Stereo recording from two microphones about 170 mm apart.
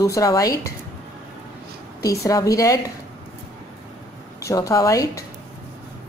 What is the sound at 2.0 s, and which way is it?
Speech, 20° left (ahead or behind).